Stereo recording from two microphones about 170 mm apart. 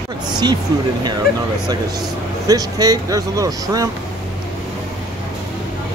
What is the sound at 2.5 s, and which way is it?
Speech, 20° right (ahead or behind).